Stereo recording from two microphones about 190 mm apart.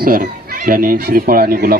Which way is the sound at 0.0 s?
50° right (ahead or behind).